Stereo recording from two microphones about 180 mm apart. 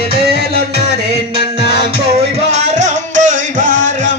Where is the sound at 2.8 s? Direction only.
45° right (ahead or behind).